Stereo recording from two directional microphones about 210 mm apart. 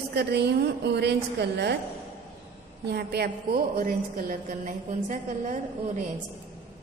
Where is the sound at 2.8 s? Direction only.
50° right (ahead or behind).